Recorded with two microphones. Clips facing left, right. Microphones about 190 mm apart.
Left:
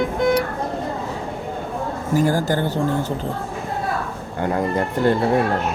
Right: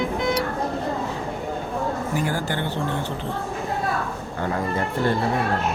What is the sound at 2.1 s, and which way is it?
Speech, 40° left (ahead or behind).